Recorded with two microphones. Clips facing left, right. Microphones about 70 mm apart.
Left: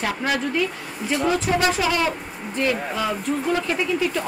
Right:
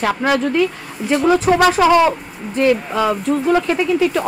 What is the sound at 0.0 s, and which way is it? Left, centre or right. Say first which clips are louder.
Speech: right 7 dB; right.